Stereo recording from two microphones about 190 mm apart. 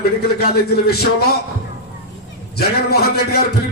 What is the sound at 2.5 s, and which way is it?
Music, 55° left (ahead or behind).